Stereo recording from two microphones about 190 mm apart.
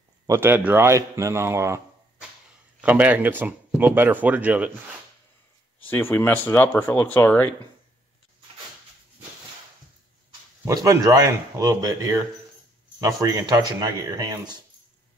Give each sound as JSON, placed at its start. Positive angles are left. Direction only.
{"t": 0.3, "sound": "speech", "side_deg": -10}
{"t": 2.8, "sound": "speech", "side_deg": -10}
{"t": 5.9, "sound": "speech", "side_deg": 10}
{"t": 10.6, "sound": "speech", "side_deg": -20}